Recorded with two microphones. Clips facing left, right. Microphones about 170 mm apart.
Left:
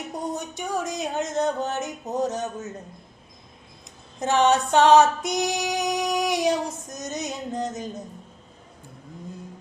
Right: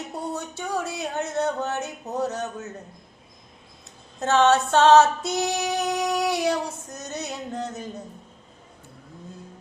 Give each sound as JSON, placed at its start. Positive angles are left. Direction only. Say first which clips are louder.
{"t": 0.1, "sound": "female singing", "louder": "left 3 dB", "side_deg": 15}
{"t": 4.2, "sound": "female singing", "louder": "right 1 dB", "side_deg": 15}